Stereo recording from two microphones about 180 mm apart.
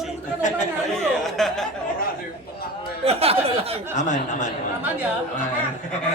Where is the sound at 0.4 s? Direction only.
45° left (ahead or behind).